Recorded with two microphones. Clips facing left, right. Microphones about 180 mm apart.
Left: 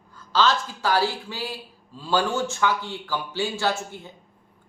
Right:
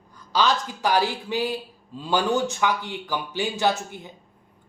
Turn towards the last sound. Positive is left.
turn(degrees=-15)  # may be behind; listen again after turning